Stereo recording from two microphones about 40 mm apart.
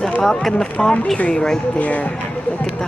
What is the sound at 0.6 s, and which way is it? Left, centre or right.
Speech, left.